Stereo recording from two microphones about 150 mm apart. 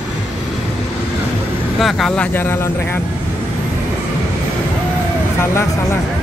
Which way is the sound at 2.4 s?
15° left (ahead or behind).